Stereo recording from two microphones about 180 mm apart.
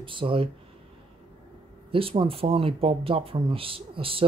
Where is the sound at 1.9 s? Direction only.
30° right (ahead or behind).